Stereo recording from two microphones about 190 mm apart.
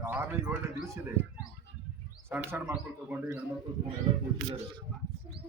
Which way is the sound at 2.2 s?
10° right (ahead or behind).